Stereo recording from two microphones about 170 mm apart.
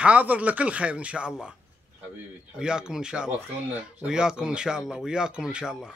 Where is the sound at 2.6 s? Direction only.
5° right (ahead or behind).